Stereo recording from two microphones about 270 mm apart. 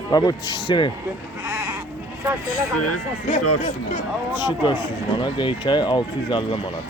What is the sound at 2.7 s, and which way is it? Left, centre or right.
Speech, left.